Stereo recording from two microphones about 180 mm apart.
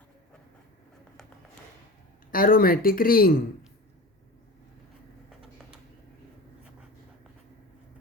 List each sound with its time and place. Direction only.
2.3 s speech: 50° left (ahead or behind)